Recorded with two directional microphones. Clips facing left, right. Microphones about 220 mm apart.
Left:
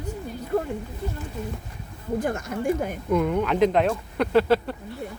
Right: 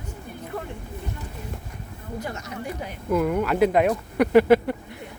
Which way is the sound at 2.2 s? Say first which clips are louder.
Left 6 dB; 50° left (ahead or behind).